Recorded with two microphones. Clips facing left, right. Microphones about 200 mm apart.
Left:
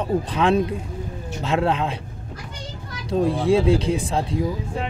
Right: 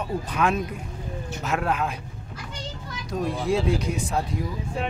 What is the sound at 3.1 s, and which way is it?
Speech, 30° left (ahead or behind).